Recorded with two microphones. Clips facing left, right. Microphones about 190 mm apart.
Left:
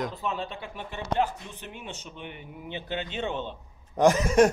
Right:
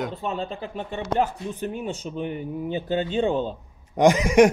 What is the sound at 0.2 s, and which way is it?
Speech, 35° right (ahead or behind).